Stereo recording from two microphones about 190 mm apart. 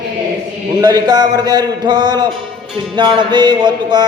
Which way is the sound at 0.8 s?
20° right (ahead or behind).